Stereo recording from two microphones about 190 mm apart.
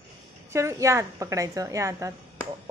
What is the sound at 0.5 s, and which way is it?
A woman's voice, 15° right (ahead or behind).